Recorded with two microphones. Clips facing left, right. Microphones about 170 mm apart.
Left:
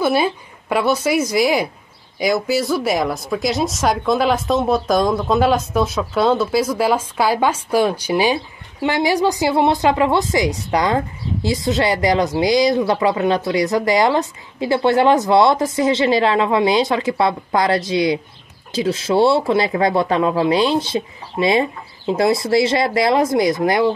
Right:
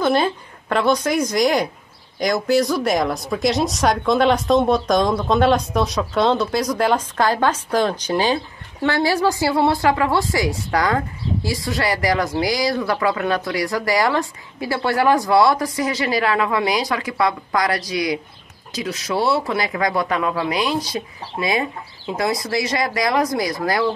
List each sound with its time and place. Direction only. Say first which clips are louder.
0.0 s a woman's voice: left 1 dB; 10° left (ahead or behind)